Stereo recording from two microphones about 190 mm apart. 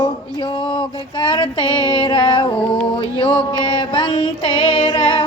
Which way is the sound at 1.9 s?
25° left (ahead or behind).